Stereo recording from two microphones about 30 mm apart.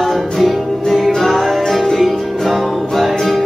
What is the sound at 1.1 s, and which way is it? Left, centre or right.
Music, centre.